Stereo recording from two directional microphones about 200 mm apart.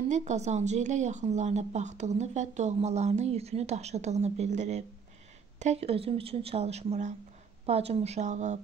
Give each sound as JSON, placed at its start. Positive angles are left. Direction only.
{"t": 0.1, "sound": "speech", "side_deg": -35}